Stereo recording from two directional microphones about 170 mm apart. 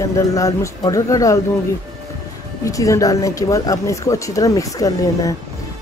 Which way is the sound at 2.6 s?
20° left (ahead or behind).